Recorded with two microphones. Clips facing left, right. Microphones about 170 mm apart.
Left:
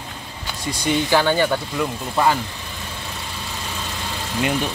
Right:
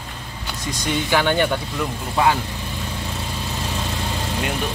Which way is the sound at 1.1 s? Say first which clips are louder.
Even; 5° left (ahead or behind).